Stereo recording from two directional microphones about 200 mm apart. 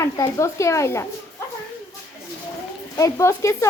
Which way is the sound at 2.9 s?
15° left (ahead or behind).